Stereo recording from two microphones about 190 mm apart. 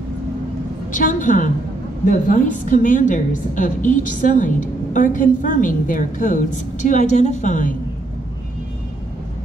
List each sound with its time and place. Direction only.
0.9 s a woman's voice: 45° left (ahead or behind)